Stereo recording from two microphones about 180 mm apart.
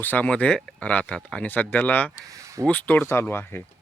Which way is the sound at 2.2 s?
15° right (ahead or behind).